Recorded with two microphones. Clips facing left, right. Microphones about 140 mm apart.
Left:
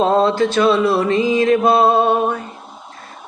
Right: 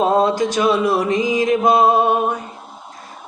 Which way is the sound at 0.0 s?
15° right (ahead or behind).